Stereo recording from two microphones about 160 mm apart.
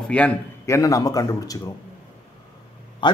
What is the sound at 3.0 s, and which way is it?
Speech, 30° left (ahead or behind).